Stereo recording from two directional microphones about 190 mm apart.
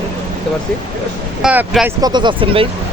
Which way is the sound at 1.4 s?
5° right (ahead or behind).